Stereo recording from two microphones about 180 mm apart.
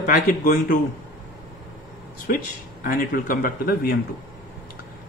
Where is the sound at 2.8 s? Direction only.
55° left (ahead or behind).